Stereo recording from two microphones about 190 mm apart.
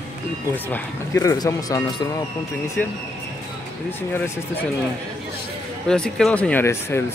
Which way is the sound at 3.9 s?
10° left (ahead or behind).